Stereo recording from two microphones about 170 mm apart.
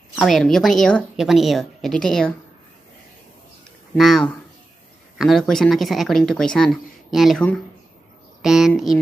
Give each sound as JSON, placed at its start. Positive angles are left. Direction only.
{"t": 0.1, "sound": "speech", "side_deg": 0}
{"t": 3.9, "sound": "speech", "side_deg": 0}